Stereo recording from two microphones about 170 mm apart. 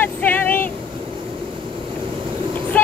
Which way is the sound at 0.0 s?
10° left (ahead or behind).